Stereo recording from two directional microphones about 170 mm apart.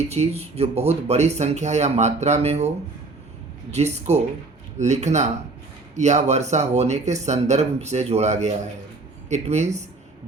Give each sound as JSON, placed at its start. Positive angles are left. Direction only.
{"t": 0.1, "sound": "speech", "side_deg": -40}